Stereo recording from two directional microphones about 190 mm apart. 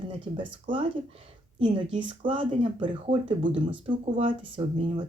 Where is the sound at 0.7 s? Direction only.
25° right (ahead or behind).